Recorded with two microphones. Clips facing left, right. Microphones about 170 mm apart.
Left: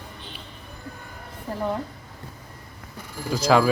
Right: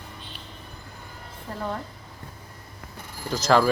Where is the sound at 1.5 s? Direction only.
10° left (ahead or behind).